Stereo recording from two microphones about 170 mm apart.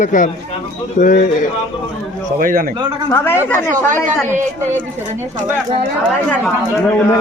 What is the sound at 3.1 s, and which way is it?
Speech, 10° left (ahead or behind).